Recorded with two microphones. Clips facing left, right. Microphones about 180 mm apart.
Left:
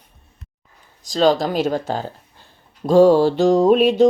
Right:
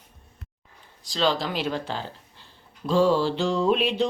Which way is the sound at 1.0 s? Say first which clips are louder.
Left 8 dB; 45° left (ahead or behind).